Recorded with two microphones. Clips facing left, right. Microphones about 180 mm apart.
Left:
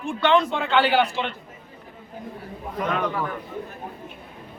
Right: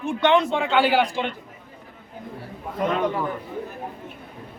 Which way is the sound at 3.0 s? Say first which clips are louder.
Right 2 dB; 25° right (ahead or behind).